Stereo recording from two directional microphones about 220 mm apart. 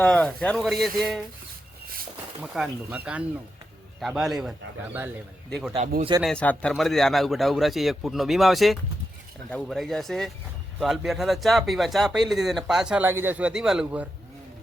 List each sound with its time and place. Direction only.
0.0 s speech: 5° left (ahead or behind)
2.4 s speech: 5° right (ahead or behind)
5.5 s speech: centre (ahead or behind)
6.0 s speech: 20° right (ahead or behind)
6.2 s speech: 5° left (ahead or behind)